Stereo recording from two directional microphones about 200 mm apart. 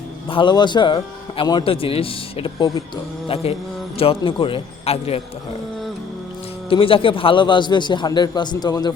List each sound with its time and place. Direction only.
0.3 s speech: 25° left (ahead or behind)
6.7 s speech: 25° left (ahead or behind)